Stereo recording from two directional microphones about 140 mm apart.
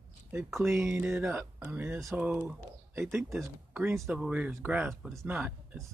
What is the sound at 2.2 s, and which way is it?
Speech, 10° right (ahead or behind).